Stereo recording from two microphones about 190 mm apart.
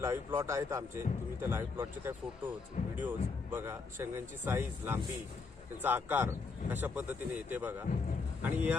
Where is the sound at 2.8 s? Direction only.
45° left (ahead or behind).